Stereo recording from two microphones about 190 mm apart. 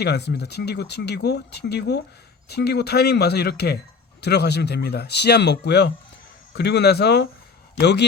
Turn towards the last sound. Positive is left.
turn(degrees=65)  # may be behind; listen again after turning